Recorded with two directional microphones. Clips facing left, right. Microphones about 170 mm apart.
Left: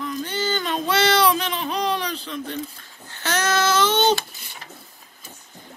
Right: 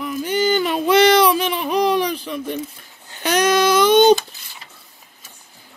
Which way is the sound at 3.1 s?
15° right (ahead or behind).